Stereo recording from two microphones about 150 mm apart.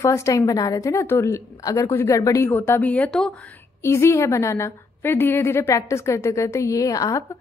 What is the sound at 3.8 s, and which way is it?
A woman's voice, 15° left (ahead or behind).